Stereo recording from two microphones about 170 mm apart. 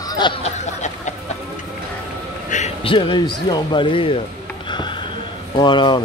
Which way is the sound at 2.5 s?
35° left (ahead or behind).